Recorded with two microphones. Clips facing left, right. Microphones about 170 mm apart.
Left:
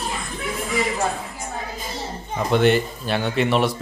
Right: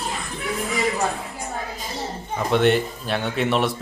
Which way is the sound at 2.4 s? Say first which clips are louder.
Left 1 dB; centre (ahead or behind).